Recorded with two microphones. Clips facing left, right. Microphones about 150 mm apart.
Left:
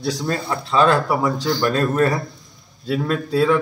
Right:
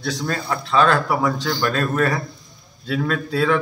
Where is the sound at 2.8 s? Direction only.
5° left (ahead or behind).